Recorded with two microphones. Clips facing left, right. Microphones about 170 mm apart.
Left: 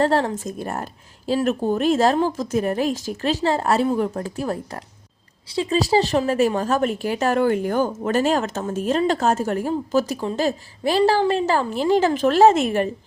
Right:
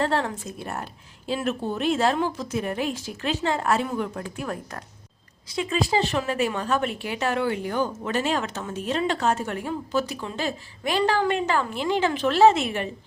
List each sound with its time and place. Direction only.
0.0 s speech: 35° left (ahead or behind)